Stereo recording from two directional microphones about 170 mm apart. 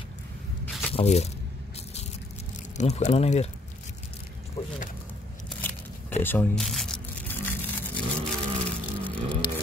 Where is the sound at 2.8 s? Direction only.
40° left (ahead or behind).